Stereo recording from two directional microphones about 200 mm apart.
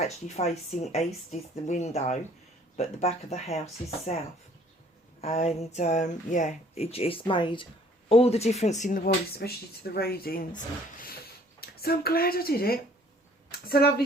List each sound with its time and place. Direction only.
0.0 s speech: 35° left (ahead or behind)
5.2 s speech: 35° left (ahead or behind)
9.3 s speech: 50° left (ahead or behind)
11.6 s speech: 50° left (ahead or behind)